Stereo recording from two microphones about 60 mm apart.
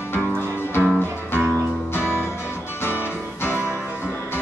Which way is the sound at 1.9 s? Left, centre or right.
Left.